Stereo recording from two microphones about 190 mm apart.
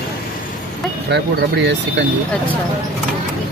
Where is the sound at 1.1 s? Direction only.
65° right (ahead or behind).